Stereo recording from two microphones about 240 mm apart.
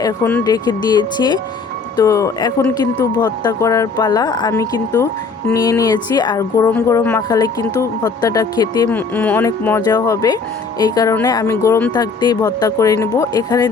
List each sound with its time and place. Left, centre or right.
0.0 s speech: centre